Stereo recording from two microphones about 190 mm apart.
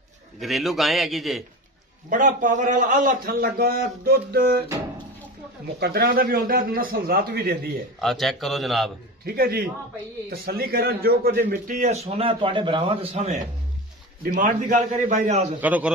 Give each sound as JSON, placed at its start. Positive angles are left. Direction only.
{"t": 0.4, "sound": "a man's voice", "side_deg": 0}
{"t": 2.0, "sound": "a man's voice", "side_deg": -45}
{"t": 5.8, "sound": "a man's voice", "side_deg": -55}
{"t": 8.0, "sound": "a man's voice", "side_deg": 0}
{"t": 9.2, "sound": "a man's voice", "side_deg": -55}
{"t": 14.3, "sound": "a man's voice", "side_deg": -45}
{"t": 15.6, "sound": "a man's voice", "side_deg": -10}